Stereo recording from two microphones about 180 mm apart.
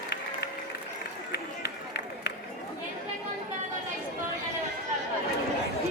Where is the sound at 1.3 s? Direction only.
65° left (ahead or behind).